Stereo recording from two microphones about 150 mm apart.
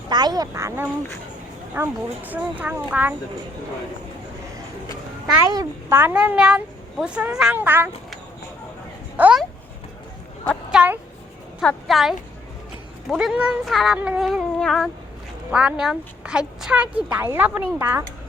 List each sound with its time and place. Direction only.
0.1 s a child's voice: 30° right (ahead or behind); by 3.2 s 10° right (ahead or behind)
5.5 s a child's voice: 25° right (ahead or behind)
6.0 s a woman's voice: 10° right (ahead or behind)
9.1 s a child's voice: 10° right (ahead or behind)
10.7 s a sound: 10° right (ahead or behind)
11.6 s a woman's voice: 5° left (ahead or behind); by 18.0 s 15° right (ahead or behind)